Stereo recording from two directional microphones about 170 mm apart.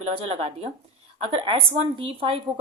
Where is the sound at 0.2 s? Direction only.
35° right (ahead or behind).